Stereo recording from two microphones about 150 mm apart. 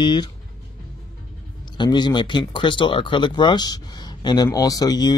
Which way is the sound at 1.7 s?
30° left (ahead or behind).